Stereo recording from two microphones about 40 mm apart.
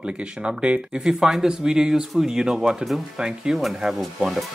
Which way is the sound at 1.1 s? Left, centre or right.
Centre.